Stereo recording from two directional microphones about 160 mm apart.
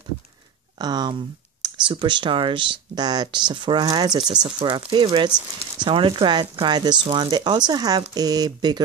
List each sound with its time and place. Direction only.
0.7 s speech: 25° right (ahead or behind)